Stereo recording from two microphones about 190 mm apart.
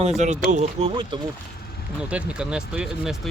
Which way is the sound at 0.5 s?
30° right (ahead or behind).